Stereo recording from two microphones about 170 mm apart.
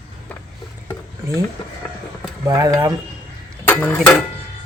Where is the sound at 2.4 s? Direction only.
20° right (ahead or behind).